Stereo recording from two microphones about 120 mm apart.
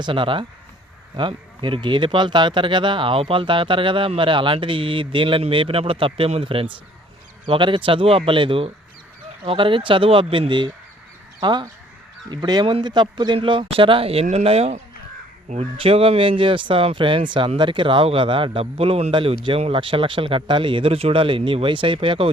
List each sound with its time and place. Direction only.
0.0 s speech: 45° right (ahead or behind)
15.8 s speech: 50° right (ahead or behind)
19.1 s speech: 45° right (ahead or behind)